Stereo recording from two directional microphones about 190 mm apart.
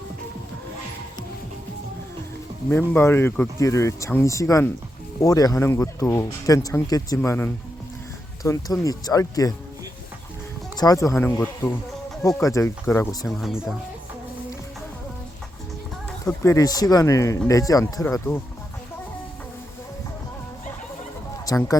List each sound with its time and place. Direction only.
2.6 s speech: 10° left (ahead or behind)
10.8 s speech: 20° left (ahead or behind)
13.2 s speech: centre (ahead or behind)
16.0 s speech: 15° left (ahead or behind)
21.4 s speech: 20° left (ahead or behind)